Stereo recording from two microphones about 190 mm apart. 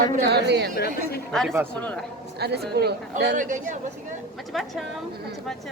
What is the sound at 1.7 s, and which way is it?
Speech, 5° left (ahead or behind).